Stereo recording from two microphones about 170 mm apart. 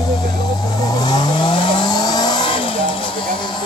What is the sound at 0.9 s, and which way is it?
Vehicle, 25° left (ahead or behind).